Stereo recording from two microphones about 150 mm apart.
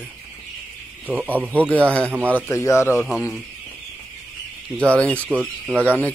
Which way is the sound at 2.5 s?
20° left (ahead or behind).